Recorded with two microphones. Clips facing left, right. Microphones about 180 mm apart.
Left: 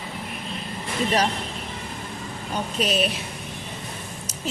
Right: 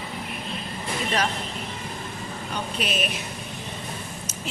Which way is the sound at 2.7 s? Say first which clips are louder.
Left 6 dB; 40° left (ahead or behind).